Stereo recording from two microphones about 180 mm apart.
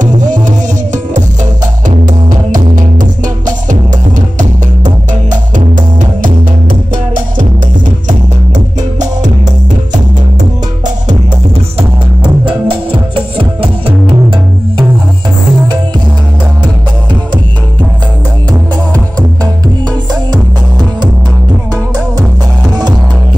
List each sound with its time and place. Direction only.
0.0 s music: 45° right (ahead or behind)
12.2 s music: 30° right (ahead or behind)